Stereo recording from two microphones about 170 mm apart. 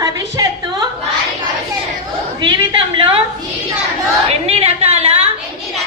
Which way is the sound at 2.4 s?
25° right (ahead or behind).